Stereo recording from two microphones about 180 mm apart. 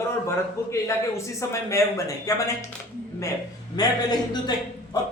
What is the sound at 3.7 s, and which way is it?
Speech, 20° left (ahead or behind).